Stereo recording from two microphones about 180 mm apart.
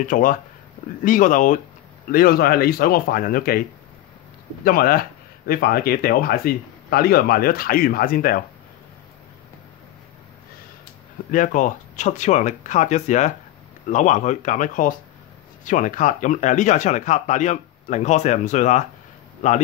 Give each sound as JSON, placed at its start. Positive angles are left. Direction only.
{"t": 0.0, "sound": "speech", "side_deg": 45}
{"t": 4.6, "sound": "speech", "side_deg": 55}
{"t": 11.3, "sound": "speech", "side_deg": 45}